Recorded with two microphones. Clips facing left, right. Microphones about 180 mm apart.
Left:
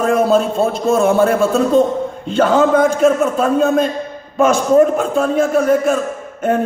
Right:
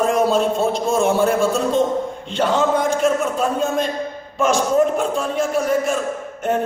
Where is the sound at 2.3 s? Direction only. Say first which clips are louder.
Left 6 dB; 45° left (ahead or behind).